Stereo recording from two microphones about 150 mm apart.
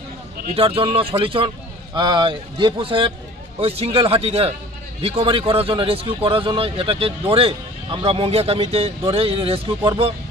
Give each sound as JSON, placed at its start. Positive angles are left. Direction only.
{"t": 0.6, "sound": "speech", "side_deg": -40}